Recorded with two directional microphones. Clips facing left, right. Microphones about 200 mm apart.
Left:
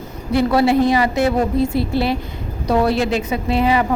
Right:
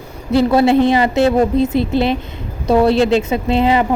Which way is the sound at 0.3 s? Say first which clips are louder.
Right 3 dB; 25° right (ahead or behind).